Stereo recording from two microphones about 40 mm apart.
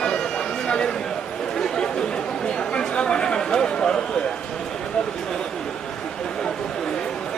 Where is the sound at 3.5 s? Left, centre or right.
Left.